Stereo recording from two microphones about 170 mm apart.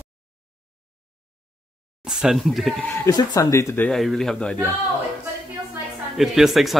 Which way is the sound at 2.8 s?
15° left (ahead or behind).